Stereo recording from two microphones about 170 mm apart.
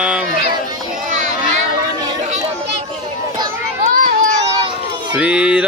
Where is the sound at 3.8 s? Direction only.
55° right (ahead or behind).